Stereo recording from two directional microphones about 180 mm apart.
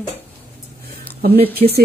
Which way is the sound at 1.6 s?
60° right (ahead or behind).